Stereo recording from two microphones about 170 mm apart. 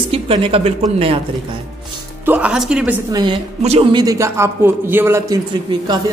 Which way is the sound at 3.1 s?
25° right (ahead or behind).